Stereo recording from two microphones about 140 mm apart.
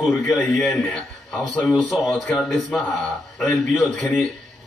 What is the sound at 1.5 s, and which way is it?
A man's voice, centre (ahead or behind).